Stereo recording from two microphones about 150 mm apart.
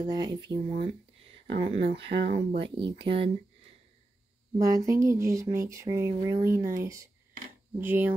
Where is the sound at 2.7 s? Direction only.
35° right (ahead or behind).